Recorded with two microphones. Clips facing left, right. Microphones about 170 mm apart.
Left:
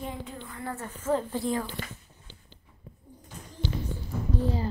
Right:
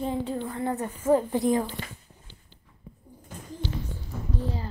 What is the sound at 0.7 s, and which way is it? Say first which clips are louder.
A woman's voice: right 5 dB; 15° right (ahead or behind).